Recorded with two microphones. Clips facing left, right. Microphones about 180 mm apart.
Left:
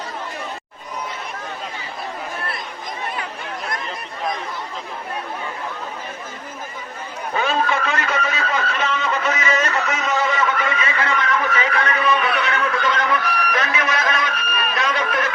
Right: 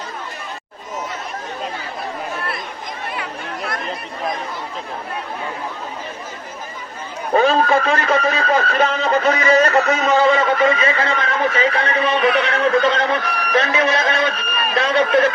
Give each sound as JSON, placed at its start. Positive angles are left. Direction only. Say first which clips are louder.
{"t": 7.3, "sound": "a man's voice", "louder": "right 7 dB", "side_deg": -35}